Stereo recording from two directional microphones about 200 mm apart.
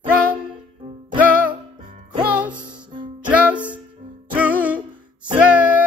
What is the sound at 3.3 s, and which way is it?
Music, 10° right (ahead or behind).